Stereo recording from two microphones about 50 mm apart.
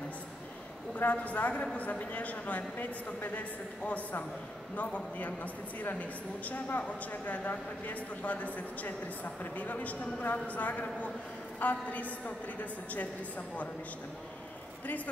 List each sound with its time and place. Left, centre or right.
0.9 s a man's voice: left